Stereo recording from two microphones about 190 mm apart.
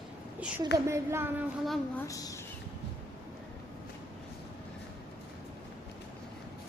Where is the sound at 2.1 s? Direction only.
20° left (ahead or behind).